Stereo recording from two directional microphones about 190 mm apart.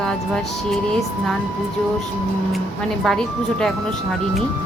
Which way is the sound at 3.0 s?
5° left (ahead or behind).